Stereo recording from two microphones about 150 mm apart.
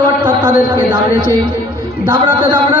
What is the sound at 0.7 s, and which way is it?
Speech, 30° right (ahead or behind).